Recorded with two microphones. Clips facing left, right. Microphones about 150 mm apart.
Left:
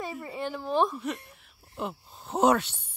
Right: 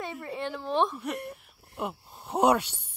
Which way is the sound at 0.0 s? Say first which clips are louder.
Even; centre (ahead or behind).